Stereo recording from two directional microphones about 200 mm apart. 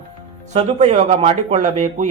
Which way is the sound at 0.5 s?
35° right (ahead or behind).